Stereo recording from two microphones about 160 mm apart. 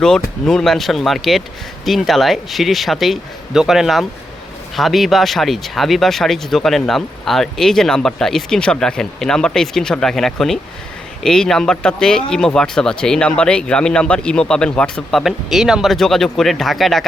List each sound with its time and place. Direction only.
0.0 s speech: 5° left (ahead or behind)